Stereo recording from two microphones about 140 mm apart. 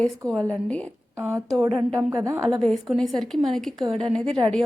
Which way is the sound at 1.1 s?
20° right (ahead or behind).